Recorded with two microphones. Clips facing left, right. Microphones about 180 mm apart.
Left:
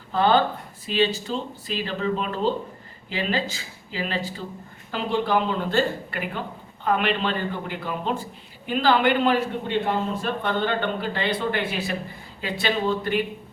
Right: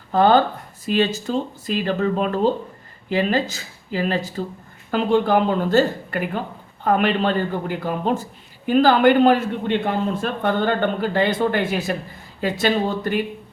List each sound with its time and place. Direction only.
0.1 s a man's voice: 45° right (ahead or behind)